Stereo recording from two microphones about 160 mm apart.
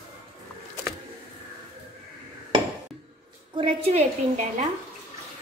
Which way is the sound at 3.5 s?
35° right (ahead or behind).